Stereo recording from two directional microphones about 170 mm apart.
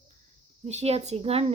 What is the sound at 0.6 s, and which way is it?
Speech, 40° right (ahead or behind).